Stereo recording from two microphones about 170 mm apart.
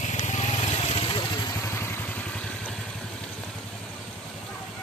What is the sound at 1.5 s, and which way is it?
Vehicle, 15° left (ahead or behind).